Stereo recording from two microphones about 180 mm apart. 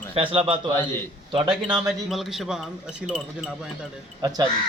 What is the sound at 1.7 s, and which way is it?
Speech, 5° right (ahead or behind).